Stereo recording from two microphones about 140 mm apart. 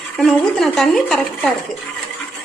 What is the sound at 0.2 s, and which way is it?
A woman's voice, 5° left (ahead or behind).